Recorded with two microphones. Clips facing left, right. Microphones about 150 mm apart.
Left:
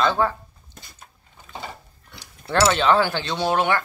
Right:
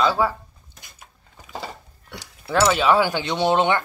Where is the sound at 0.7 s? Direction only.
15° right (ahead or behind).